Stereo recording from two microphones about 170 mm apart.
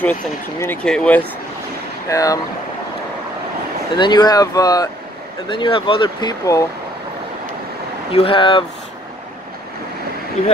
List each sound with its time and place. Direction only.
0.0 s speech: 10° left (ahead or behind)
2.0 s speech: 20° left (ahead or behind)
3.9 s speech: 25° left (ahead or behind)
8.1 s speech: 30° left (ahead or behind)